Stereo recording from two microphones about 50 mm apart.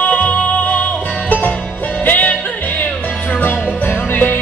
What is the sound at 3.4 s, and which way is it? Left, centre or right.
Music, left.